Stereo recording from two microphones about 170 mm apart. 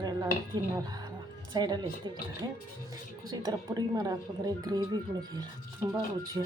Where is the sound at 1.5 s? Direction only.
25° right (ahead or behind).